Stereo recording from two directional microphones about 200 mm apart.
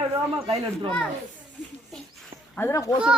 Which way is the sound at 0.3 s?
30° right (ahead or behind).